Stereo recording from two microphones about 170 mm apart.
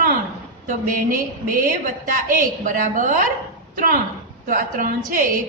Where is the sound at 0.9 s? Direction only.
55° right (ahead or behind).